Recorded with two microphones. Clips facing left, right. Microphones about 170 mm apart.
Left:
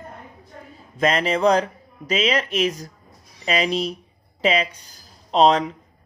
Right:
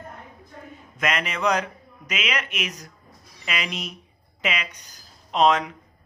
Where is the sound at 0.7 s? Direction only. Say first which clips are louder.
Left 6 dB; 30° left (ahead or behind).